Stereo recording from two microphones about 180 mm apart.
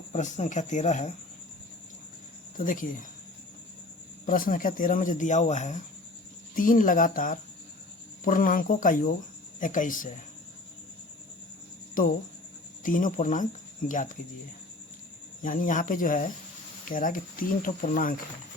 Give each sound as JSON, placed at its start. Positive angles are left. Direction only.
{"t": 0.1, "sound": "speech", "side_deg": 40}
{"t": 2.6, "sound": "speech", "side_deg": 50}
{"t": 4.3, "sound": "speech", "side_deg": 50}
{"t": 12.0, "sound": "speech", "side_deg": 50}
{"t": 15.4, "sound": "speech", "side_deg": 45}